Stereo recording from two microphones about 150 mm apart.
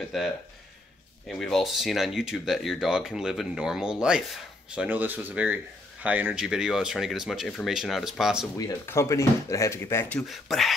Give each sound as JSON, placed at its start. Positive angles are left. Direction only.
{"t": 0.1, "sound": "speech", "side_deg": 0}
{"t": 8.8, "sound": "speech", "side_deg": 15}
{"t": 10.2, "sound": "speech", "side_deg": 0}